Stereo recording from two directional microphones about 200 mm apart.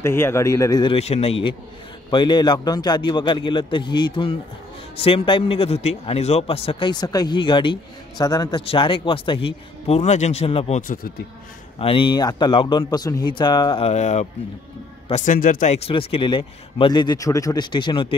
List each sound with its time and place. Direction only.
0.0 s speech: 10° left (ahead or behind)
0.9 s a man's voice: 30° left (ahead or behind)
10.8 s speech: 45° left (ahead or behind)
11.8 s a man's voice: 25° left (ahead or behind)